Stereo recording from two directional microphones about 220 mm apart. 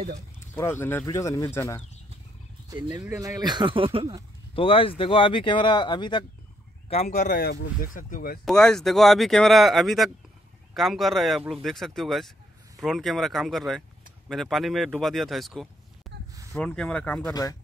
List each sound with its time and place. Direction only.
0.6 s speech: 10° left (ahead or behind)
2.7 s speech: 15° right (ahead or behind)
4.6 s speech: 25° left (ahead or behind)
7.2 s speech: 45° left (ahead or behind)
8.5 s speech: 5° left (ahead or behind)
17.3 s speech: 15° left (ahead or behind)